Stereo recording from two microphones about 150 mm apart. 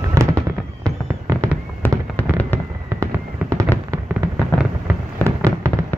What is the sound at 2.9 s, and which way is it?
Fireworks, 20° right (ahead or behind).